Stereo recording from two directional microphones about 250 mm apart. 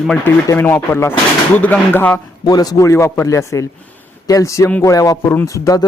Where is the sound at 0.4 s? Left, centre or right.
Centre.